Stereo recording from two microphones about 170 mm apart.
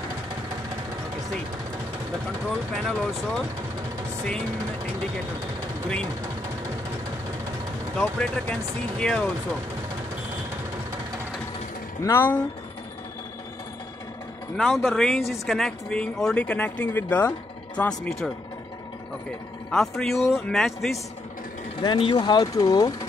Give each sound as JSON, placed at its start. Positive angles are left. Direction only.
{"t": 2.7, "sound": "speech", "side_deg": 0}
{"t": 8.0, "sound": "speech", "side_deg": 5}
{"t": 12.0, "sound": "speech", "side_deg": 15}
{"t": 14.6, "sound": "speech", "side_deg": 0}
{"t": 19.7, "sound": "speech", "side_deg": 0}
{"t": 21.8, "sound": "speech", "side_deg": 30}